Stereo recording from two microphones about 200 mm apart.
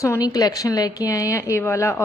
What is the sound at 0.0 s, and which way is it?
A woman's voice, 15° left (ahead or behind).